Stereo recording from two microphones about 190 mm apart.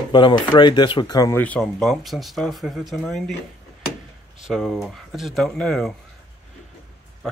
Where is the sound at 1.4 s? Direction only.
5° left (ahead or behind).